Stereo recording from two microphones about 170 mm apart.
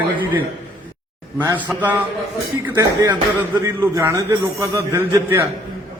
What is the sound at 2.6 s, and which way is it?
A man's voice, 15° right (ahead or behind).